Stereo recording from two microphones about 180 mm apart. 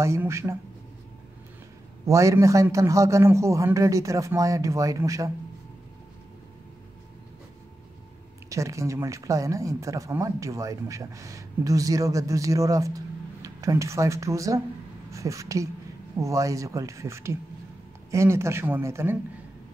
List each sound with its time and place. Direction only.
0.0 s speech: 15° right (ahead or behind)
2.0 s speech: 15° right (ahead or behind)
8.5 s speech: 15° right (ahead or behind)